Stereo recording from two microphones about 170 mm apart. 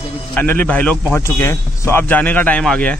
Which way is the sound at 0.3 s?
10° left (ahead or behind).